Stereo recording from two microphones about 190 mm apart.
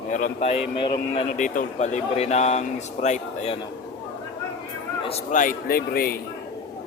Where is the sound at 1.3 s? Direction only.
40° left (ahead or behind).